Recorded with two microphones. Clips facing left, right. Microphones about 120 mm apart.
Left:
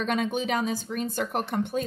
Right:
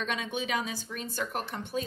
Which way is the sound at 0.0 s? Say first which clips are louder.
Left 7 dB; 50° left (ahead or behind).